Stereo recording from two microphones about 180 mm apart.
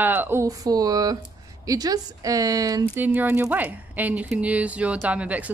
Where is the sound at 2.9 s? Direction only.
10° right (ahead or behind).